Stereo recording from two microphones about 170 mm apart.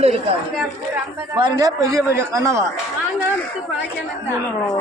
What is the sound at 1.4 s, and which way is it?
A man's voice, 25° right (ahead or behind).